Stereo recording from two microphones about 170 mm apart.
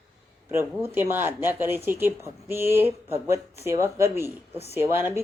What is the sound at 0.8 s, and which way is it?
Speech, 15° right (ahead or behind).